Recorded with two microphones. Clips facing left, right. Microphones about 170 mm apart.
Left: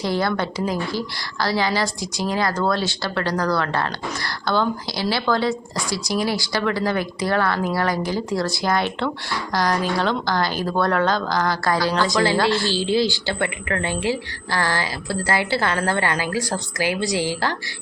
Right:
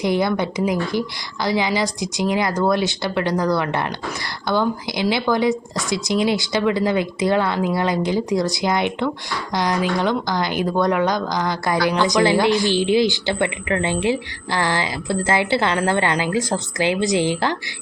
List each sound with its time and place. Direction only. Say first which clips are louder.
0.0 s a woman's voice: right 3 dB; 20° right (ahead or behind)